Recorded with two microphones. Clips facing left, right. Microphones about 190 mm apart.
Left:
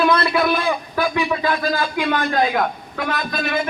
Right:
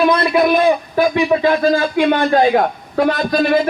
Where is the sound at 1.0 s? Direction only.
35° right (ahead or behind).